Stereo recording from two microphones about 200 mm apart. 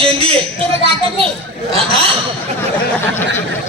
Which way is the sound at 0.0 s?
30° right (ahead or behind).